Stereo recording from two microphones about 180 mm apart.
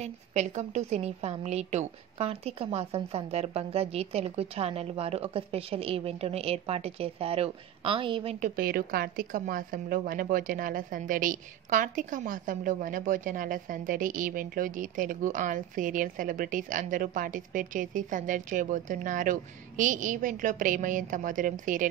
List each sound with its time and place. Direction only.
0.0 s a woman's voice: 40° right (ahead or behind)
8.4 s a woman's voice: 55° right (ahead or behind)